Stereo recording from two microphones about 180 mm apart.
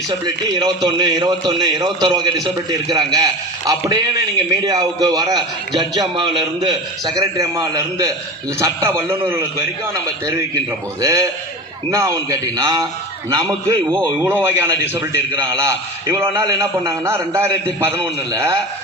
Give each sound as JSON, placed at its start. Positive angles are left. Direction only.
{"t": 0.1, "sound": "a man's voice", "side_deg": -25}